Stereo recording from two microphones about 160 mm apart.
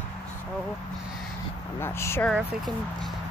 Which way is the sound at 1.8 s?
15° left (ahead or behind).